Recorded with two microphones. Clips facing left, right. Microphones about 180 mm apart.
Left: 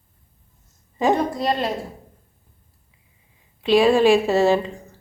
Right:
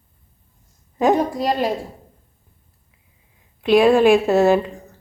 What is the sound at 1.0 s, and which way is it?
Speech, 10° right (ahead or behind).